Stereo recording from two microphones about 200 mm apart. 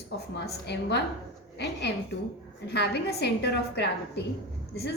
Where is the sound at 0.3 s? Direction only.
55° left (ahead or behind).